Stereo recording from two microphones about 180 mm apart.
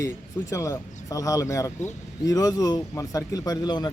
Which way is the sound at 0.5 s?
20° left (ahead or behind).